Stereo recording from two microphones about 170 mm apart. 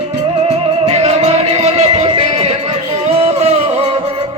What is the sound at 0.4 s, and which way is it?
Music, 40° right (ahead or behind).